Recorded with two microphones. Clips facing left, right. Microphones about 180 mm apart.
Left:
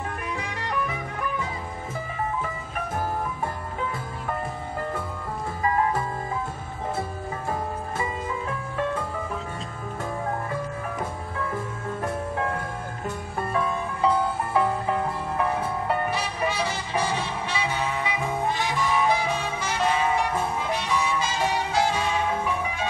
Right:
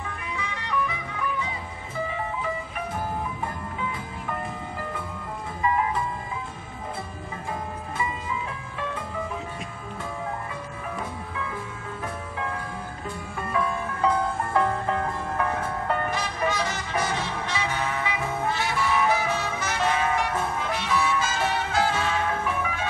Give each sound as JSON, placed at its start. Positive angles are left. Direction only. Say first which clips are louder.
{"t": 0.0, "sound": "music", "louder": "left 2 dB", "side_deg": 45}
{"t": 5.6, "sound": "music", "louder": "left 1 dB", "side_deg": 45}
{"t": 8.0, "sound": "music", "louder": "right 1 dB", "side_deg": 45}
{"t": 11.3, "sound": "music", "louder": "left 6 dB", "side_deg": 45}
{"t": 14.0, "sound": "music", "louder": "left 1 dB", "side_deg": 10}